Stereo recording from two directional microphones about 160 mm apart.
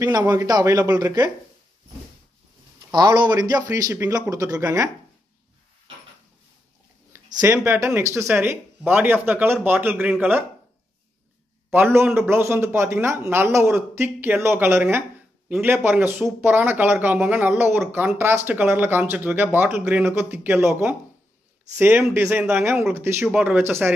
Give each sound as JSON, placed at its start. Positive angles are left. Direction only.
{"t": 0.0, "sound": "speech", "side_deg": -20}
{"t": 2.9, "sound": "speech", "side_deg": -25}
{"t": 7.1, "sound": "speech", "side_deg": -20}
{"t": 11.7, "sound": "speech", "side_deg": -15}